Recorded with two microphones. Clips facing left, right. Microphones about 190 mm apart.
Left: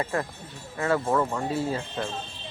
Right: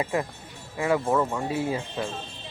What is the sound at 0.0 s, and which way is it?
Speech, 15° right (ahead or behind).